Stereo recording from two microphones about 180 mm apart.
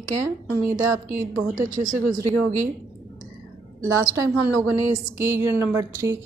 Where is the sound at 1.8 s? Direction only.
45° right (ahead or behind).